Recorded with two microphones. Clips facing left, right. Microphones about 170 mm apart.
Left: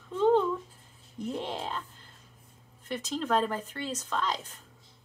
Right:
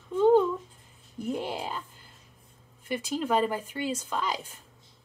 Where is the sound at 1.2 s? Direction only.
5° right (ahead or behind).